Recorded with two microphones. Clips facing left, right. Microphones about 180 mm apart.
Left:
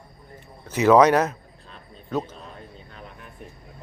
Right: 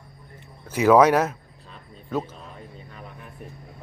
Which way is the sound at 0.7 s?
10° right (ahead or behind).